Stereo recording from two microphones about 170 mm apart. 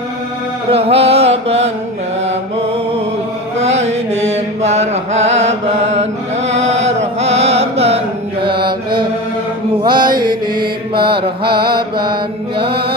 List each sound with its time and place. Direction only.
0.7 s music: 35° right (ahead or behind)
3.6 s chant: 40° right (ahead or behind)
5.3 s music: 40° right (ahead or behind)
6.9 s music: 40° right (ahead or behind)
9.8 s mantra: 25° right (ahead or behind)